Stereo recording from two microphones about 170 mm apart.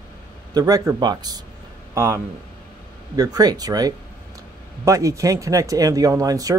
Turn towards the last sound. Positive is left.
turn(degrees=-20)  # may be behind; listen again after turning